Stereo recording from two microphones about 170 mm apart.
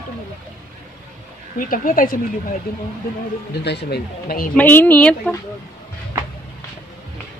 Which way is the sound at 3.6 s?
75° left (ahead or behind).